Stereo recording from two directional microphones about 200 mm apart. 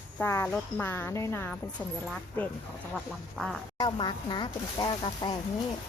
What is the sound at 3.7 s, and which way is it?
Speech, 20° left (ahead or behind).